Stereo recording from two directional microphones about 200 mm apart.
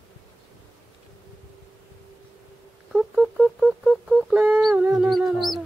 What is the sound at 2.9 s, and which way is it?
Bird, centre (ahead or behind).